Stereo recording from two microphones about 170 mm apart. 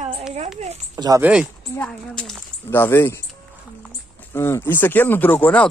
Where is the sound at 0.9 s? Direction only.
20° right (ahead or behind).